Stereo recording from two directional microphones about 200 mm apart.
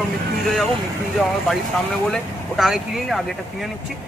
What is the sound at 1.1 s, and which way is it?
A man's voice, centre (ahead or behind).